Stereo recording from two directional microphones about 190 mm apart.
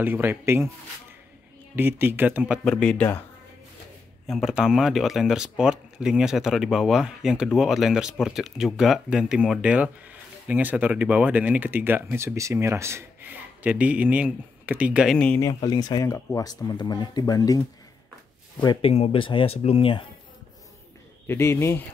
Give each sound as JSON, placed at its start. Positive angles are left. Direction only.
{"t": 0.0, "sound": "speech", "side_deg": -10}
{"t": 1.8, "sound": "speech", "side_deg": -10}
{"t": 4.3, "sound": "speech", "side_deg": 0}
{"t": 15.4, "sound": "speech", "side_deg": 20}
{"t": 21.3, "sound": "speech", "side_deg": 15}